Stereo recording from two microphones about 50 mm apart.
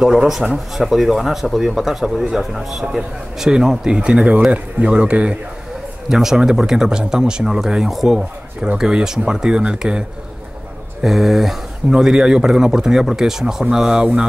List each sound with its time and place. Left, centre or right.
0.0 s speech: centre
6.0 s speech: centre
11.0 s speech: centre
11.9 s speech: centre